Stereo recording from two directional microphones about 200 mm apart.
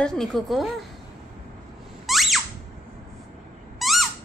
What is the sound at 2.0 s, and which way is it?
Squeak, centre (ahead or behind).